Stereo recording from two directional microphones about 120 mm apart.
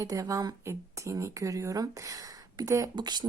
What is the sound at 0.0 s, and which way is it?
Speech, 25° right (ahead or behind).